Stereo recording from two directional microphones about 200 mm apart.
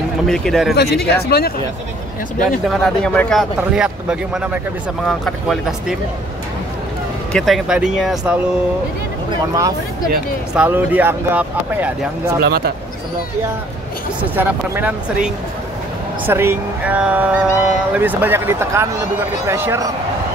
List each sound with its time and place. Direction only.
0.3 s speech: centre (ahead or behind)
1.1 s speech: 50° left (ahead or behind)
2.7 s speech: 5° left (ahead or behind)
7.3 s speech: centre (ahead or behind)
9.3 s speech: 20° right (ahead or behind)
10.5 s speech: 5° right (ahead or behind)
12.4 s speech: 50° right (ahead or behind)
14.3 s speech: 10° right (ahead or behind)